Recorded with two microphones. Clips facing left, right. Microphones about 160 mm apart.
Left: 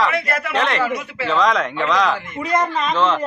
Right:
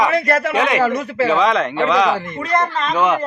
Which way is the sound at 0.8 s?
40° right (ahead or behind).